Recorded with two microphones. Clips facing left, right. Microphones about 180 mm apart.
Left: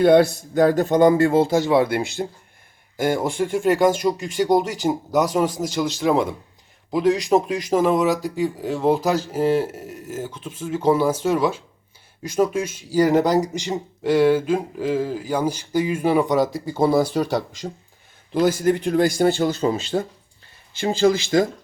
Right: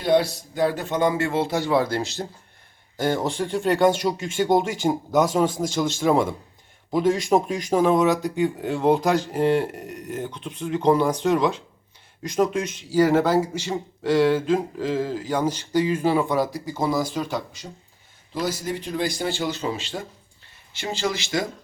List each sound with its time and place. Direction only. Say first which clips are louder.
0.0 s speech: left 6 dB; 55° left (ahead or behind)
1.5 s speech: left 4 dB; 25° left (ahead or behind)
17.2 s speech: left 5 dB; 75° left (ahead or behind)
18.3 s speech: left 9 dB; 55° left (ahead or behind); by 21.3 s 35° left (ahead or behind)